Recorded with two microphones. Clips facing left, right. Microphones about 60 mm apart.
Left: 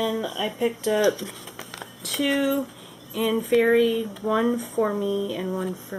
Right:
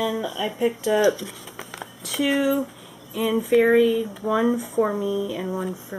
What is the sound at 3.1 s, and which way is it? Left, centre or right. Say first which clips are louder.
Speech: right 2 dB; centre.